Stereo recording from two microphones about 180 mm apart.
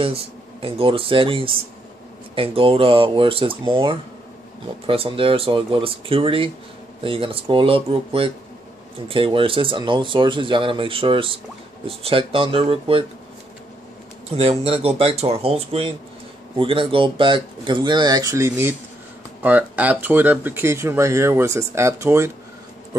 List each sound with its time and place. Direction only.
0.0 s speech: 30° right (ahead or behind)
14.3 s speech: 35° right (ahead or behind); by 22.3 s 15° right (ahead or behind)